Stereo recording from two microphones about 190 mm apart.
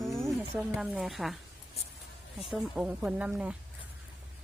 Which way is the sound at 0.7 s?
5° right (ahead or behind).